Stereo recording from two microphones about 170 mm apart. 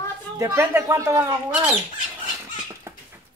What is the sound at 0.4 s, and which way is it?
A woman's voice, 15° right (ahead or behind).